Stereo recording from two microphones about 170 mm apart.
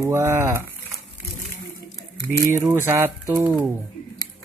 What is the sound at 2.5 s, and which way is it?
Speech, 15° right (ahead or behind).